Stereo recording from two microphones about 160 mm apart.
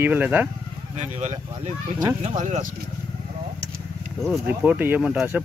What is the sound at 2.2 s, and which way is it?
Speech, 50° right (ahead or behind).